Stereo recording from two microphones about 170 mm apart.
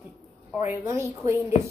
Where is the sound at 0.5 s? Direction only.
15° right (ahead or behind).